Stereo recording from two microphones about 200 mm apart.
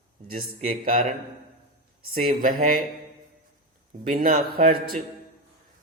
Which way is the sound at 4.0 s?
45° right (ahead or behind).